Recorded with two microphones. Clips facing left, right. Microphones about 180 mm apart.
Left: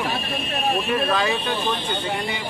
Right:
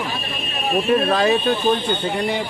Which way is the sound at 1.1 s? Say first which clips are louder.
Right 5 dB; 35° right (ahead or behind).